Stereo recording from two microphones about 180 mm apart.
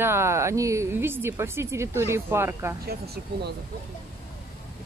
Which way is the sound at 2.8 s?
60° right (ahead or behind).